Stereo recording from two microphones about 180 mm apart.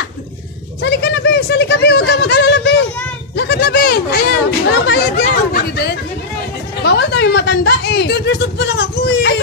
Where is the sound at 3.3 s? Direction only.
60° left (ahead or behind).